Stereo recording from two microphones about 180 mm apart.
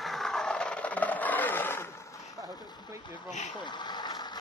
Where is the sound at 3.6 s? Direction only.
25° left (ahead or behind).